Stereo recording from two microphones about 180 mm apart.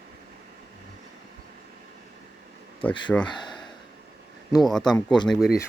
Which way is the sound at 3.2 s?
25° left (ahead or behind).